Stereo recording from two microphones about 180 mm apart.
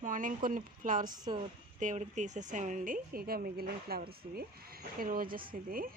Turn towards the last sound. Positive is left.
turn(degrees=-50)  # may be behind; listen again after turning